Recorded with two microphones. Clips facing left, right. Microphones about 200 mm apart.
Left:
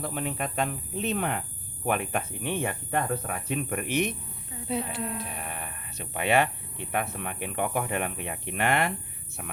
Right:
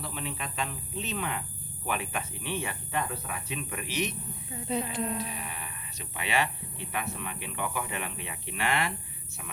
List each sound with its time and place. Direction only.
0.0 s speech: 50° left (ahead or behind)
4.7 s speech: 5° left (ahead or behind)
5.1 s speech: 55° left (ahead or behind)